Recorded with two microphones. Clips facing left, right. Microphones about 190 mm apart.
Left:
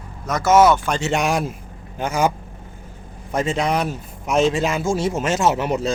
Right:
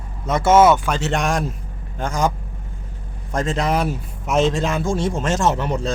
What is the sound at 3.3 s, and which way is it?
A man's voice, centre (ahead or behind).